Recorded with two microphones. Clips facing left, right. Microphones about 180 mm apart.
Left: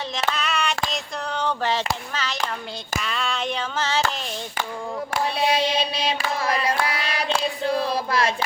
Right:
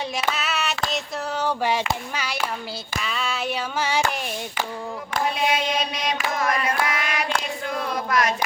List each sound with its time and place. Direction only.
0.3 s child singing: 5° right (ahead or behind)
3.0 s a sound: centre (ahead or behind)
5.4 s carnatic music: 30° left (ahead or behind)
7.6 s male singing: 30° left (ahead or behind)